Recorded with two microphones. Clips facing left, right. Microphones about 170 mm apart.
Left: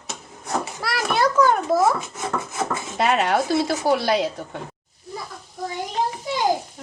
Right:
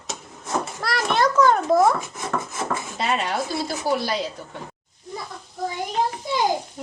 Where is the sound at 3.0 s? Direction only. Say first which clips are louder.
Left 6 dB; 60° left (ahead or behind).